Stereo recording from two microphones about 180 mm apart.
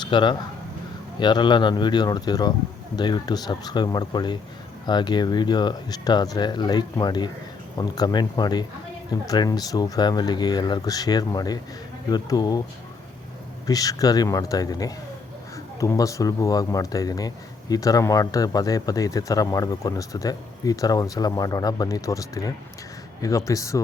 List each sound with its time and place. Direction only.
0.0 s speech: 25° left (ahead or behind)
13.7 s speech: 20° left (ahead or behind)